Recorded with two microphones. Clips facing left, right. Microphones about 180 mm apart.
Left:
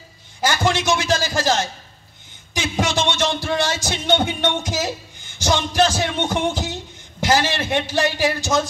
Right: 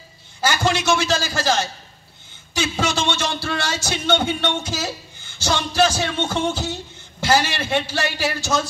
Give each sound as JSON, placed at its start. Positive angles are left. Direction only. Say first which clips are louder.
{"t": 0.4, "sound": "a man's voice", "louder": "left 1 dB", "side_deg": 15}